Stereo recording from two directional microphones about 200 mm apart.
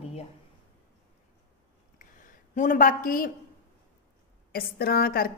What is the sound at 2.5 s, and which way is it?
Speech, 40° left (ahead or behind).